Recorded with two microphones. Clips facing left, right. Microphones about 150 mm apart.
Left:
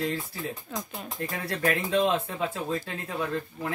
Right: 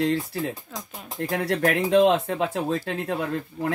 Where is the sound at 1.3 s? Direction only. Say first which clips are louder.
Right 6 dB; 70° right (ahead or behind).